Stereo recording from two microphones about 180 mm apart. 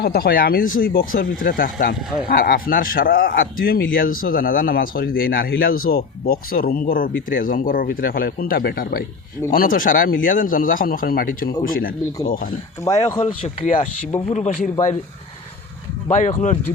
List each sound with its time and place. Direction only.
0.0 s speech: 55° left (ahead or behind)
12.8 s speech: 20° left (ahead or behind)
14.3 s speech: 40° left (ahead or behind)
16.0 s speech: 45° left (ahead or behind)